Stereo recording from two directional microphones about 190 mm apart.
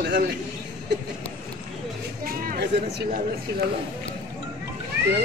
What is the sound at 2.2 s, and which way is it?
Music, 60° right (ahead or behind).